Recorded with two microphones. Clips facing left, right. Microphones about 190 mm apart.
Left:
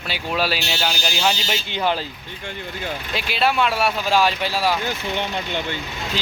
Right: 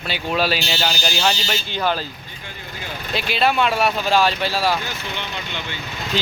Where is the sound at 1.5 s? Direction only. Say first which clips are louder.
Even; 20° left (ahead or behind).